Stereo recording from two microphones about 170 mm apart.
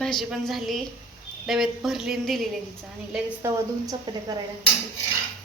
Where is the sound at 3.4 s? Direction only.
20° right (ahead or behind).